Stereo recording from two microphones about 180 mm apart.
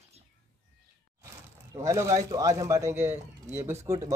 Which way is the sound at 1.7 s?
15° right (ahead or behind).